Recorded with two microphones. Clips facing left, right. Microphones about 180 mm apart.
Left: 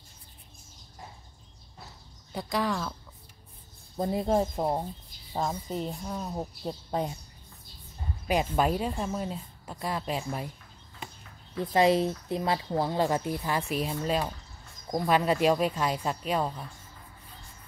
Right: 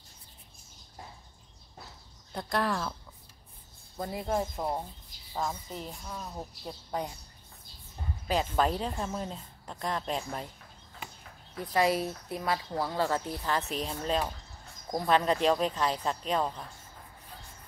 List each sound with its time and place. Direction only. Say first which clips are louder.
2.3 s speech: left 1 dB; centre (ahead or behind)
3.9 s speech: left 5 dB; 25° left (ahead or behind)
8.3 s a woman's voice: left 2 dB; 15° left (ahead or behind)
11.5 s a woman's voice: left 4 dB; 25° left (ahead or behind); by 16.6 s 10° left (ahead or behind)